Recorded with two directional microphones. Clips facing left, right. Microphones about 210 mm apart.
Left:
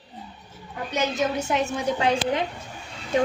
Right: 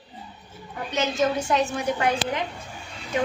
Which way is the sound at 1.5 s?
25° left (ahead or behind).